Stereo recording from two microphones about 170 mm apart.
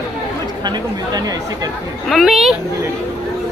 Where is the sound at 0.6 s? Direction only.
25° right (ahead or behind).